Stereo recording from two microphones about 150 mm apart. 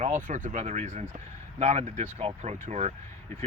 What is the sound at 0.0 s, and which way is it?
Speech, 60° right (ahead or behind).